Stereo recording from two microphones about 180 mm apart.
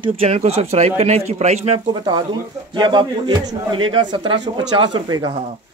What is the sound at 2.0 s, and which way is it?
A man's voice, 25° right (ahead or behind).